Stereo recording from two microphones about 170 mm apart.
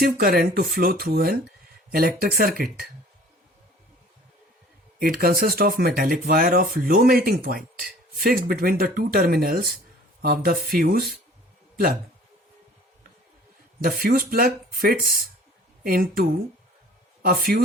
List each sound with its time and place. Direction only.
0.0 s speech: 60° right (ahead or behind)
4.9 s speech: 60° right (ahead or behind)
14.0 s speech: 60° right (ahead or behind)
17.2 s speech: 60° right (ahead or behind)